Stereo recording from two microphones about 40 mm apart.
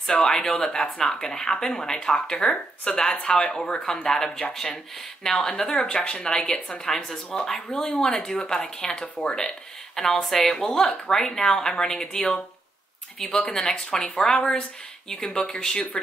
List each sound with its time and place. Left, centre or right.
0.2 s speech: centre
10.2 s a woman's voice: centre